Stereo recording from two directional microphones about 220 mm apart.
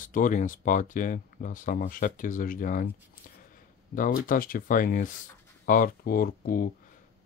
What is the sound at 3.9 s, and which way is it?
Speech, 40° left (ahead or behind).